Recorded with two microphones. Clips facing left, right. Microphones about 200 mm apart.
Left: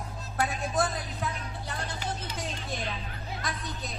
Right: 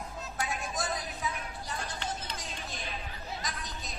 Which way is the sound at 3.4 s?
60° left (ahead or behind).